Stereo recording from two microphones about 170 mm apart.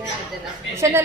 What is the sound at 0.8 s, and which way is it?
Speech, 15° right (ahead or behind).